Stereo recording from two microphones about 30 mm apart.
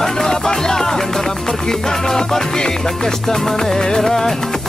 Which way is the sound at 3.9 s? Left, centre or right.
Centre.